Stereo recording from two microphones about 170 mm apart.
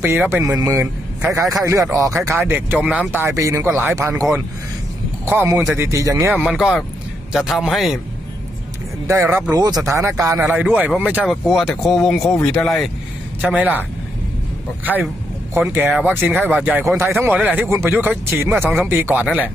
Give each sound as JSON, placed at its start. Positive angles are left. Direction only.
{"t": 0.0, "sound": "a man's voice", "side_deg": -15}
{"t": 9.0, "sound": "a man's voice", "side_deg": -15}
{"t": 14.8, "sound": "a man's voice", "side_deg": -10}